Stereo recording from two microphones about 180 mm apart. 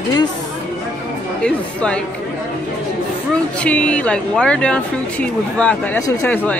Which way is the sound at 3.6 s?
5° left (ahead or behind).